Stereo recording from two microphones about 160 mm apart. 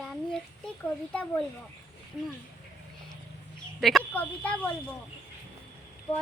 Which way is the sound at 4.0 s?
10° left (ahead or behind).